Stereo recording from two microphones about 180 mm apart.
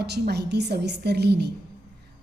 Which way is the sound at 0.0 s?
65° right (ahead or behind).